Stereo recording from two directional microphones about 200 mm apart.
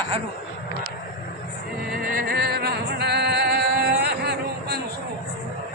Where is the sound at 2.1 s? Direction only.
50° right (ahead or behind).